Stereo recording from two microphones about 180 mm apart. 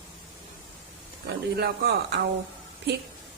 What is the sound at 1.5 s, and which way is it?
Speech, 65° right (ahead or behind).